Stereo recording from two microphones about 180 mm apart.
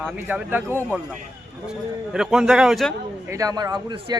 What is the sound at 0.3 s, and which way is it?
Speech, 10° right (ahead or behind).